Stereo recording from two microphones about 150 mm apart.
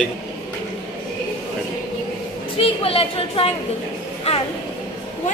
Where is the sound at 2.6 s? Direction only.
40° left (ahead or behind).